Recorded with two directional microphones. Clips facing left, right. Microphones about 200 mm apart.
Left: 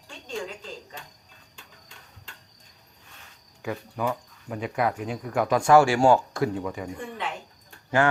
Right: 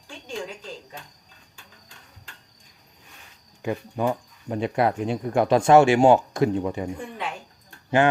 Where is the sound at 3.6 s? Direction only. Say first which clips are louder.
Right 4 dB; 25° right (ahead or behind).